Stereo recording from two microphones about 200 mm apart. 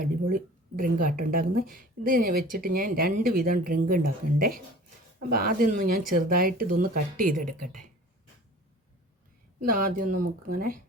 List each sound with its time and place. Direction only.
0.0 s speech: 45° right (ahead or behind)
9.6 s speech: 45° right (ahead or behind)